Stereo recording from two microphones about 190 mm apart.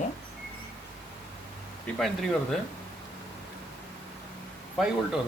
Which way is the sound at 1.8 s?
Centre (ahead or behind).